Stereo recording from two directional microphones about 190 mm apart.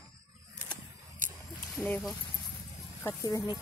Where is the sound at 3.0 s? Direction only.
20° left (ahead or behind).